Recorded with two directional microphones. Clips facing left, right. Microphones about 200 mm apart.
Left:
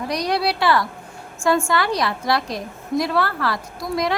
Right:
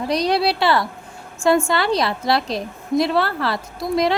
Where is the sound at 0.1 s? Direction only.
25° right (ahead or behind).